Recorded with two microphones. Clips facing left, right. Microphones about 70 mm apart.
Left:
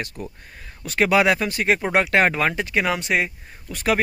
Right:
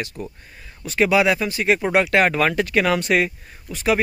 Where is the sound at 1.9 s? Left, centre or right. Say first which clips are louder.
Right 1 dB; left.